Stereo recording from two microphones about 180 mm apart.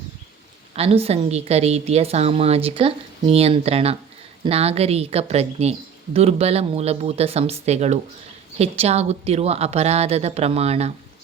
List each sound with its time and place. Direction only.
0.7 s a woman's voice: 35° right (ahead or behind)